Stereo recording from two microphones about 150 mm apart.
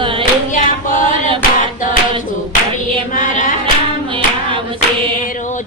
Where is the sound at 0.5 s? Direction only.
60° left (ahead or behind).